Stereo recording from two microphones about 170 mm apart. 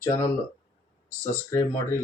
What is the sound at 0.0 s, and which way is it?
Speech, 20° left (ahead or behind).